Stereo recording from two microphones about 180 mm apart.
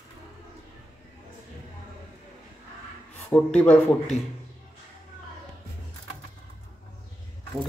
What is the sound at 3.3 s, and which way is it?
Speech, 5° left (ahead or behind).